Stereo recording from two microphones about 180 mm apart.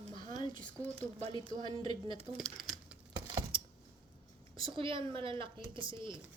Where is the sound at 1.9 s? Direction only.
25° left (ahead or behind).